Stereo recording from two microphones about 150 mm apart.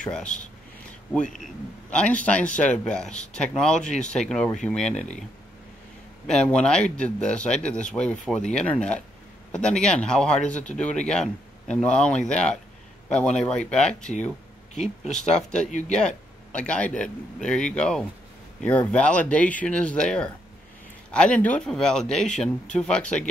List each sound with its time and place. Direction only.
0.0 s speech: 5° left (ahead or behind)
1.9 s speech: 5° left (ahead or behind)
6.2 s speech: 5° left (ahead or behind)
15.3 s speech: 5° left (ahead or behind)